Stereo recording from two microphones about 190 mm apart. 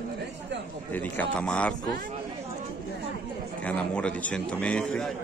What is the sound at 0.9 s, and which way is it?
Speech, 10° left (ahead or behind).